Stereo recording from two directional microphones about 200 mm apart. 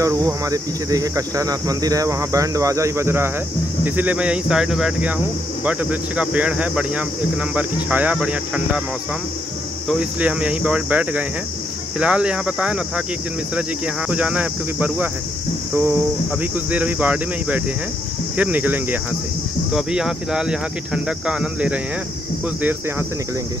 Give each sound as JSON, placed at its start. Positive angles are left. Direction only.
{"t": 0.0, "sound": "speech", "side_deg": -15}
{"t": 9.8, "sound": "speech", "side_deg": -5}